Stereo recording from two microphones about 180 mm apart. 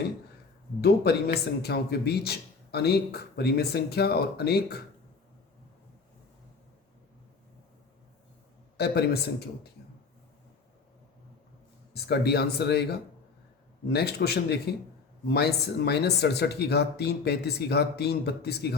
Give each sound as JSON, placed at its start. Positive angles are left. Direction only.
{"t": 0.8, "sound": "a man's voice", "side_deg": 60}
{"t": 8.8, "sound": "a man's voice", "side_deg": 65}
{"t": 12.0, "sound": "a man's voice", "side_deg": 65}